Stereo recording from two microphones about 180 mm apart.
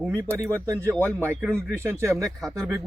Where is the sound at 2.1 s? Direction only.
Centre (ahead or behind).